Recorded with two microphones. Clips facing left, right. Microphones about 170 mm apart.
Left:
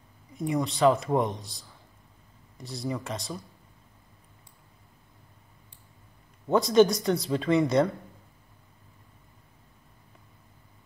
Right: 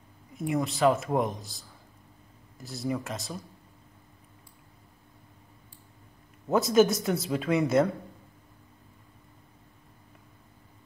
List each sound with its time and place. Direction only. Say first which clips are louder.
0.3 s a man's voice: left 1 dB; centre (ahead or behind)
6.5 s a man's voice: left 2 dB; 5° right (ahead or behind)